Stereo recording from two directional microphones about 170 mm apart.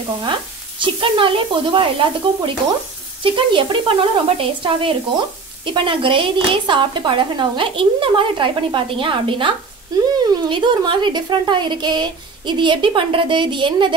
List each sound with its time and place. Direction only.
0.2 s speech: 30° right (ahead or behind)